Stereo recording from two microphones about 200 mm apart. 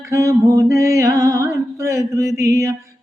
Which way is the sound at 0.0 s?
15° right (ahead or behind).